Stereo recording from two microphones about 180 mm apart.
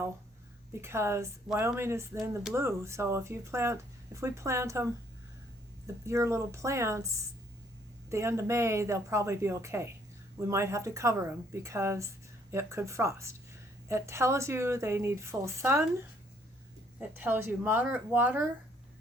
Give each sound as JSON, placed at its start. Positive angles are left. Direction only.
{"t": 0.7, "sound": "a woman's voice", "side_deg": -15}
{"t": 6.1, "sound": "a woman's voice", "side_deg": -15}
{"t": 17.0, "sound": "a woman's voice", "side_deg": -10}